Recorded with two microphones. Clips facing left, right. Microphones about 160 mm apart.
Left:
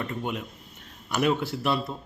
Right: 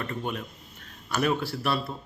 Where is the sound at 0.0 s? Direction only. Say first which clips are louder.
Left 1 dB; 15° left (ahead or behind).